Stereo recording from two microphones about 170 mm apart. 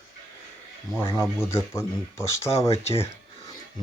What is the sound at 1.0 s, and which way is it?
Speech, 20° left (ahead or behind).